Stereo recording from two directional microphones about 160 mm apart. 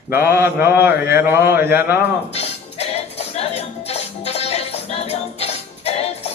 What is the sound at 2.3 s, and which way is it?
Music, 40° left (ahead or behind).